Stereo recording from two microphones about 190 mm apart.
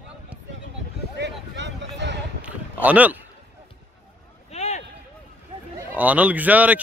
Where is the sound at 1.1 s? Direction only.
70° right (ahead or behind).